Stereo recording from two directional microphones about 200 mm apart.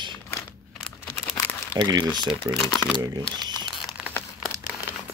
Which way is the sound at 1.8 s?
20° right (ahead or behind).